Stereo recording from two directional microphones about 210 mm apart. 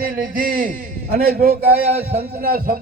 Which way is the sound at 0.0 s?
45° right (ahead or behind).